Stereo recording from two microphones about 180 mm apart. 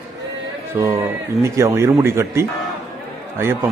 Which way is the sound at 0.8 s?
15° right (ahead or behind).